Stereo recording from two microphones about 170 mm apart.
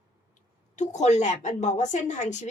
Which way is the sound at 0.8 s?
45° left (ahead or behind).